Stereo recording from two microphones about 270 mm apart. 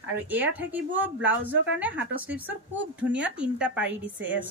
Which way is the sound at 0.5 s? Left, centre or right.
Centre.